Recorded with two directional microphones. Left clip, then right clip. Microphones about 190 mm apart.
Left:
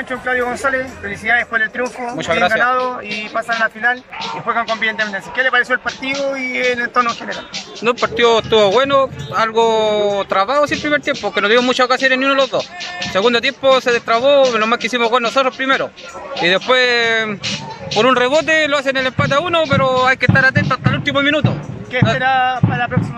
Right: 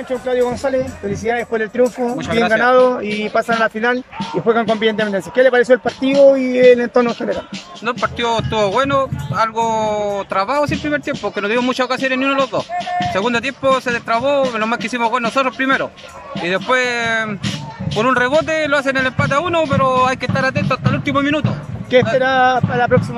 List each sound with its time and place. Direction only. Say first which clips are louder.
0.1 s speech: right 2 dB; 25° right (ahead or behind); by 2.1 s 40° right (ahead or behind)
2.1 s speech: left 4 dB; centre (ahead or behind)
2.7 s speech: right 5 dB; 40° right (ahead or behind)
7.8 s speech: left 5 dB; centre (ahead or behind)
22.2 s speech: right 1 dB; 55° right (ahead or behind)